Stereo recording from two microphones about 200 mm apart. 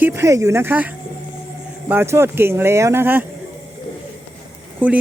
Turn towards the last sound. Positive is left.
turn(degrees=-10)  # may be behind; listen again after turning